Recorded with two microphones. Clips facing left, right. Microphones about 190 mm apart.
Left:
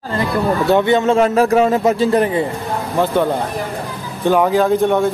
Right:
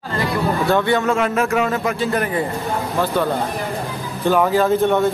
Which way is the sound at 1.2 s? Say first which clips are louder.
Left 6 dB; 35° left (ahead or behind).